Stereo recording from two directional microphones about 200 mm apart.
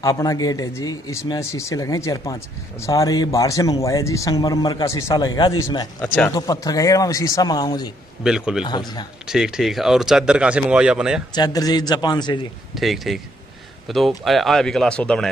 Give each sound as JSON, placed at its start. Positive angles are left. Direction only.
{"t": 0.0, "sound": "speech", "side_deg": 15}
{"t": 8.2, "sound": "speech", "side_deg": -5}
{"t": 8.6, "sound": "speech", "side_deg": 20}
{"t": 9.2, "sound": "speech", "side_deg": -5}
{"t": 11.3, "sound": "speech", "side_deg": 20}
{"t": 12.7, "sound": "speech", "side_deg": 0}